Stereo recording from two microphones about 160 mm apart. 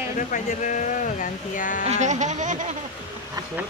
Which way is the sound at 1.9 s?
50° right (ahead or behind).